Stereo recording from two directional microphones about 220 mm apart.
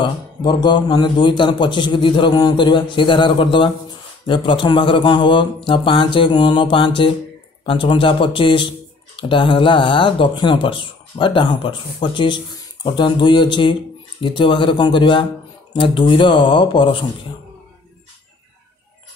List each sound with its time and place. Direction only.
0.0 s speech: 20° left (ahead or behind)